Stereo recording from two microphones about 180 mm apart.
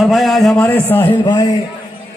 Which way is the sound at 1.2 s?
25° left (ahead or behind).